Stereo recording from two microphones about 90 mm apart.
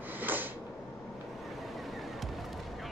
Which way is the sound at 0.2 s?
20° right (ahead or behind).